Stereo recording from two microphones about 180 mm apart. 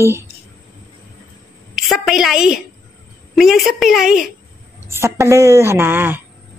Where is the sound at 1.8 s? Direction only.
Centre (ahead or behind).